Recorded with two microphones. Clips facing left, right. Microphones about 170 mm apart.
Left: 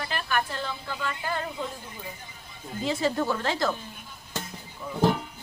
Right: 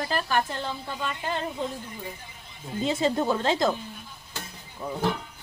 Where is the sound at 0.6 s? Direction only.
20° right (ahead or behind).